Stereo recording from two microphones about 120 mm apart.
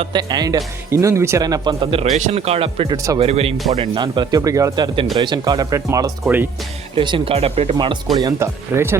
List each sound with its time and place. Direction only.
0.0 s speech: 35° right (ahead or behind)
2.1 s speech: 65° right (ahead or behind)
2.9 s speech: 30° right (ahead or behind)
3.2 s speech: 55° right (ahead or behind)
3.8 s speech: 40° right (ahead or behind); by 6.5 s 15° right (ahead or behind)
6.9 s speech: 45° right (ahead or behind)
7.3 s speech: 55° right (ahead or behind)
8.1 s speech: 25° right (ahead or behind)